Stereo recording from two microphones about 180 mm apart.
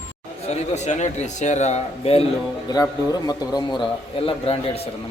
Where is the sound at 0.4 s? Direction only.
40° left (ahead or behind).